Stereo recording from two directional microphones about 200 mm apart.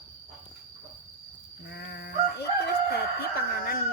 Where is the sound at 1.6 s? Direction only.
55° left (ahead or behind).